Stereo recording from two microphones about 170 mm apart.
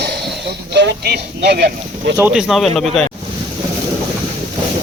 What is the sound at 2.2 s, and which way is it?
Speech, 10° right (ahead or behind).